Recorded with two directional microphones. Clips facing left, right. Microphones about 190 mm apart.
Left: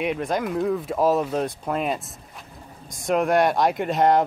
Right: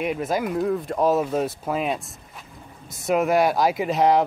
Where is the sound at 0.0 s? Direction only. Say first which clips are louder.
Even; 5° right (ahead or behind).